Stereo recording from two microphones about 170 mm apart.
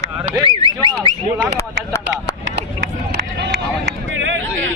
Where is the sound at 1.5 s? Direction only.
20° left (ahead or behind).